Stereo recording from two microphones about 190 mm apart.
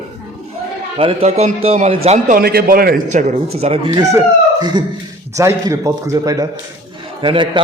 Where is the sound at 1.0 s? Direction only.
30° right (ahead or behind).